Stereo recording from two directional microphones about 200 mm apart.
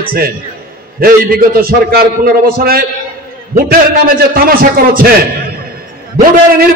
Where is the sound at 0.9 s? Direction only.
45° right (ahead or behind).